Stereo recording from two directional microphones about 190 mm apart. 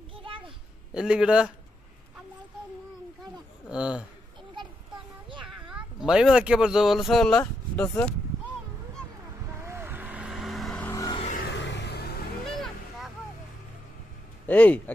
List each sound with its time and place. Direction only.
0.1 s a sound: 25° right (ahead or behind)
0.9 s a man's voice: 5° right (ahead or behind)
3.6 s speech: 5° right (ahead or behind)
5.7 s speech: 5° right (ahead or behind)
7.3 s speech: 10° left (ahead or behind)
9.6 s vehicle: 15° right (ahead or behind); by 11.1 s 15° left (ahead or behind)
11.3 s a sound: 65° left (ahead or behind)
12.4 s vehicle: centre (ahead or behind)
14.4 s speech: 10° left (ahead or behind)